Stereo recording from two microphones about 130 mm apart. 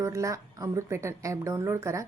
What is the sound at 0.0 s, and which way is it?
Speech, 25° right (ahead or behind).